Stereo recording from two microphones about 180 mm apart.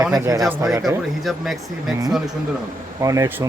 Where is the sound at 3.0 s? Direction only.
15° right (ahead or behind).